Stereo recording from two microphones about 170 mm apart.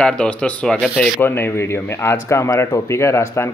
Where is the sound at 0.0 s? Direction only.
5° left (ahead or behind).